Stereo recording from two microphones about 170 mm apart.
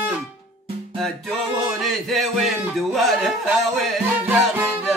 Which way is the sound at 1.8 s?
Centre (ahead or behind).